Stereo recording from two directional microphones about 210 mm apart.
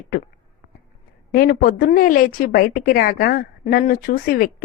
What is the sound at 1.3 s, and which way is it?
A woman's voice, 45° left (ahead or behind).